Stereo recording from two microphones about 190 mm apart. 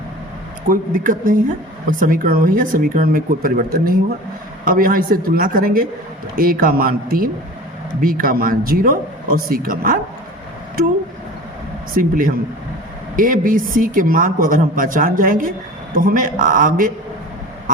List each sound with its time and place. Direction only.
0.7 s speech: 45° right (ahead or behind)
11.9 s speech: 45° right (ahead or behind)